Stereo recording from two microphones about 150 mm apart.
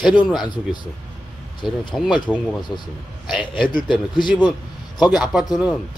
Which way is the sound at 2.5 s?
30° left (ahead or behind).